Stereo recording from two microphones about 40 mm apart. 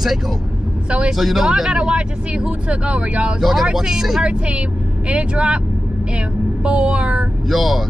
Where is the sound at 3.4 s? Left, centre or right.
Centre.